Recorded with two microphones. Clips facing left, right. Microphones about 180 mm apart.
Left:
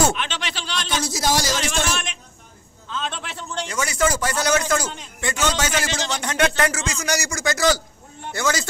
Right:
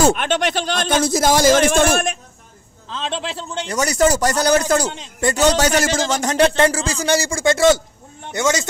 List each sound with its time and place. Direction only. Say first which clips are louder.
0.1 s a man's voice: right 9 dB; 50° right (ahead or behind)
2.9 s speech: right 5 dB; 30° right (ahead or behind)